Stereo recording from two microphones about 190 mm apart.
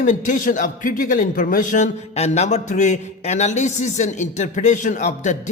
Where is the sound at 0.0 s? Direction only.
40° left (ahead or behind).